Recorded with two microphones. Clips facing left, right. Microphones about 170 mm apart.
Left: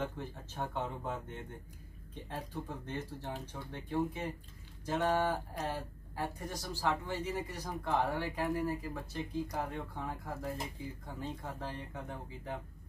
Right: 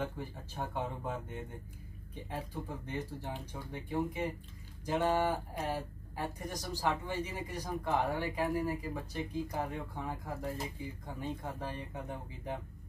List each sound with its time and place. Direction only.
0.0 s speech: 10° right (ahead or behind)
2.2 s speech: 10° right (ahead or behind)